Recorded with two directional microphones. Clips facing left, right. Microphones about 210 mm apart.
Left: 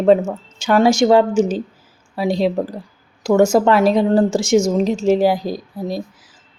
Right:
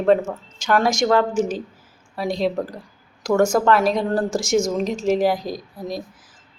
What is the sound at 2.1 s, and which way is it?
Speech, 5° left (ahead or behind).